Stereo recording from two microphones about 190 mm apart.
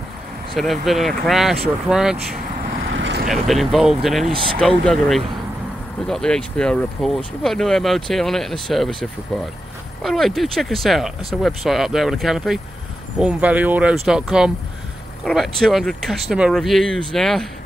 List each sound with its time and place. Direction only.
0.6 s speech: centre (ahead or behind)
2.9 s vehicle: 70° right (ahead or behind)
3.3 s speech: centre (ahead or behind)